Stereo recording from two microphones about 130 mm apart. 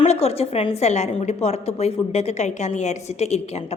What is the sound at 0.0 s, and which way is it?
A woman's voice, 55° left (ahead or behind).